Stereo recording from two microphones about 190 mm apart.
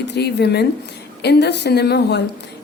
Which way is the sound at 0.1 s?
60° left (ahead or behind).